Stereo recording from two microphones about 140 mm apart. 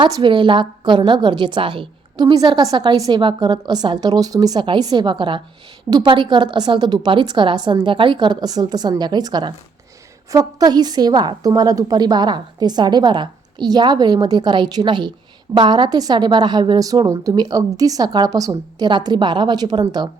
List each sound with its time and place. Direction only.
0.0 s a woman's voice: 35° right (ahead or behind)